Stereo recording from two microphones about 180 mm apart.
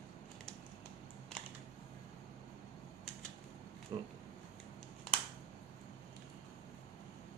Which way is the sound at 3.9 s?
35° right (ahead or behind).